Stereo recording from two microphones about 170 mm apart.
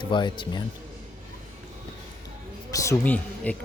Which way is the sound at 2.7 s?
20° left (ahead or behind).